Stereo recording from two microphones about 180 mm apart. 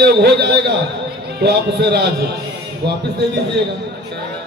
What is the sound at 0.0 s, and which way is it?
A man's voice, 65° right (ahead or behind).